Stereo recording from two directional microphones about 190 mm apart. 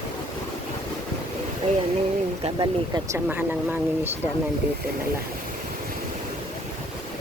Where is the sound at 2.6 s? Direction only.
20° right (ahead or behind).